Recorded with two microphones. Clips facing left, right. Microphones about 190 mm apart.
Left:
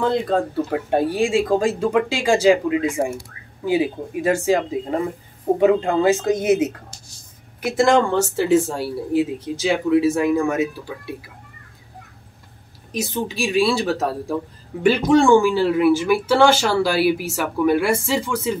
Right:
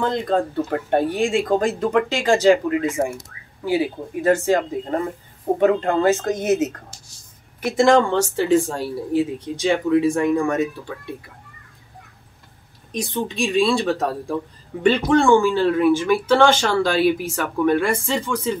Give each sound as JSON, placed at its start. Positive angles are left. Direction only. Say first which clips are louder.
{"t": 0.0, "sound": "speech", "louder": "left 1 dB", "side_deg": 5}
{"t": 7.6, "sound": "speech", "louder": "right 1 dB", "side_deg": 0}
{"t": 12.9, "sound": "speech", "louder": "even", "side_deg": 5}